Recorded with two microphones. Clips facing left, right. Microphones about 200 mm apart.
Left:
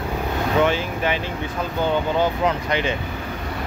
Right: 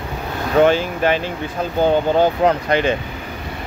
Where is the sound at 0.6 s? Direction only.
40° right (ahead or behind).